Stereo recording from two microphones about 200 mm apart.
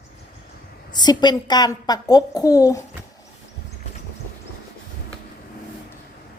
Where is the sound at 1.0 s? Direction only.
20° left (ahead or behind).